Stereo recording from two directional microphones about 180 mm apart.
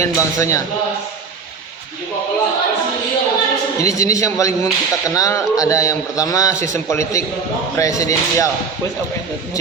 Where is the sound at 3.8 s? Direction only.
20° left (ahead or behind).